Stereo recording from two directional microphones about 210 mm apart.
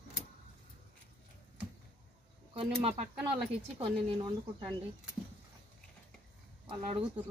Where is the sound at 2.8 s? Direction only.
30° right (ahead or behind).